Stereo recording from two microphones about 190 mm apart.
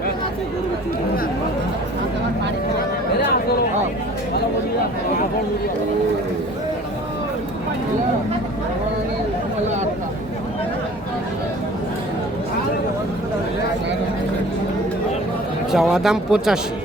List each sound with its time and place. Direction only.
15.7 s speech: centre (ahead or behind)